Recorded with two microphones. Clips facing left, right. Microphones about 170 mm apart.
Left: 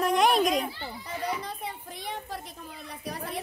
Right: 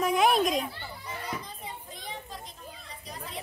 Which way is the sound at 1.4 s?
70° left (ahead or behind).